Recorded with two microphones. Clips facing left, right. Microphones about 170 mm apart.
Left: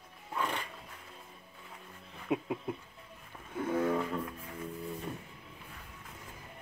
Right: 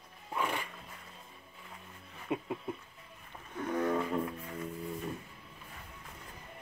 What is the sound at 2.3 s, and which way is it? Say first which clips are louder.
Speech: left 2 dB; 5° left (ahead or behind).